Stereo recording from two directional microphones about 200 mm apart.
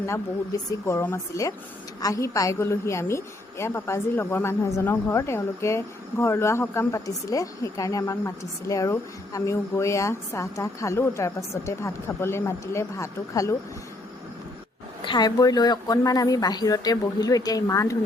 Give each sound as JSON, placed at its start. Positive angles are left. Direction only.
{"t": 0.0, "sound": "a woman's voice", "side_deg": 15}
{"t": 15.0, "sound": "speech", "side_deg": 20}